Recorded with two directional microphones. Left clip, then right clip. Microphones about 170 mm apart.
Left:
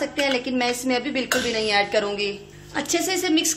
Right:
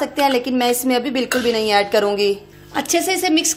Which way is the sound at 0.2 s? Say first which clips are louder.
Right 6 dB; 35° right (ahead or behind).